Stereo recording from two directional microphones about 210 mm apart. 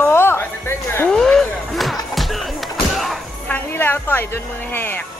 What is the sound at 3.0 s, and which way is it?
Music, 5° left (ahead or behind).